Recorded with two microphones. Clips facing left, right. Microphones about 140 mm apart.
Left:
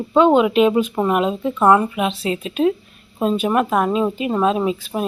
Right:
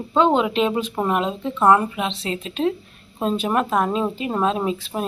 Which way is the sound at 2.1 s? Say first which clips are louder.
Left 4 dB; 30° right (ahead or behind).